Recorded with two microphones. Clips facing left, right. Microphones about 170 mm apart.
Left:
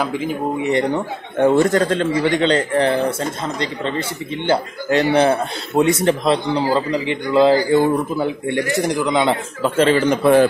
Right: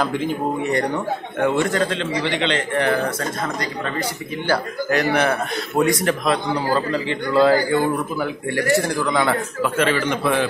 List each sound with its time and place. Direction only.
0.0 s speech: 5° left (ahead or behind)
1.4 s a man's voice: 40° left (ahead or behind)
4.5 s a man's voice: 25° left (ahead or behind); by 10.4 s 40° left (ahead or behind)